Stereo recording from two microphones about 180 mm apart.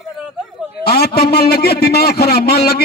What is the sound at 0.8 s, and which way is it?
A man's voice, 60° left (ahead or behind).